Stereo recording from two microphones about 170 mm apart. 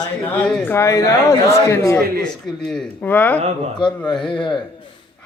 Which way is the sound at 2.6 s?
5° left (ahead or behind).